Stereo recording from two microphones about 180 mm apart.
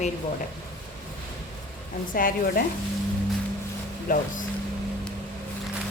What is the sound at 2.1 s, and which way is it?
Speech, 50° left (ahead or behind).